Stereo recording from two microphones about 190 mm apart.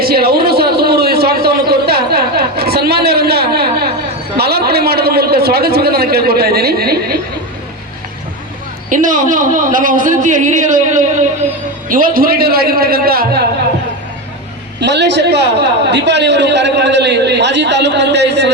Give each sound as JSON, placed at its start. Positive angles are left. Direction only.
{"t": 0.0, "sound": "a sound", "side_deg": -55}
{"t": 4.4, "sound": "a man's voice", "side_deg": -55}
{"t": 8.9, "sound": "a man's voice", "side_deg": -45}
{"t": 14.8, "sound": "a man's voice", "side_deg": -65}